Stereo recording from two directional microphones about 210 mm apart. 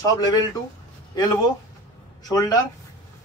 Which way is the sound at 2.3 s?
20° left (ahead or behind).